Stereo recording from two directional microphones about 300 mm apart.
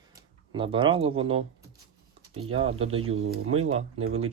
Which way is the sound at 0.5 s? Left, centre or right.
Centre.